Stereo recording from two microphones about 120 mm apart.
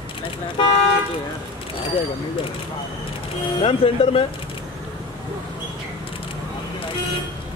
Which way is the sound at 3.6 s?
50° left (ahead or behind).